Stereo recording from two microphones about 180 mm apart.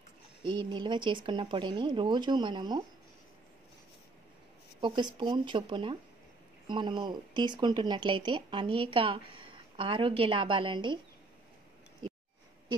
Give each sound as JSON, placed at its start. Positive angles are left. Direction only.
{"t": 0.4, "sound": "speech", "side_deg": -25}
{"t": 4.7, "sound": "speech", "side_deg": -25}